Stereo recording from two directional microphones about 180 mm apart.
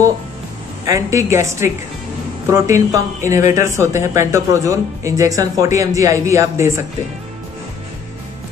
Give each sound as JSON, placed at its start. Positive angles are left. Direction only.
{"t": 0.8, "sound": "speech", "side_deg": -15}